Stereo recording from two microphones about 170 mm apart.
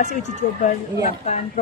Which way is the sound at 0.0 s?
45° left (ahead or behind).